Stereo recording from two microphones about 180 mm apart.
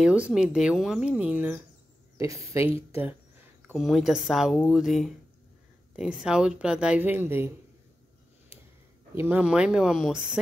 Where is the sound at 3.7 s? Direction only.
Centre (ahead or behind).